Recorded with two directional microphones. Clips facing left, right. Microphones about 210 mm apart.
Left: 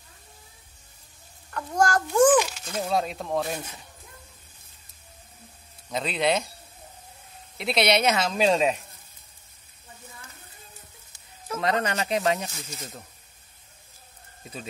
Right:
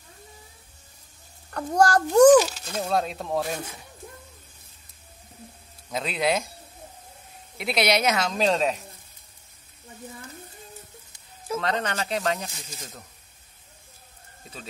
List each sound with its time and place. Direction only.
1.5 s a child's voice: 35° right (ahead or behind)
2.6 s speech: centre (ahead or behind)
5.9 s speech: centre (ahead or behind)
7.5 s speech: centre (ahead or behind)
11.6 s speech: 10° left (ahead or behind)